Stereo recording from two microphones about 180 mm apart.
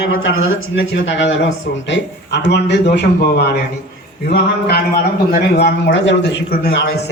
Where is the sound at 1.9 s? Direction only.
75° left (ahead or behind).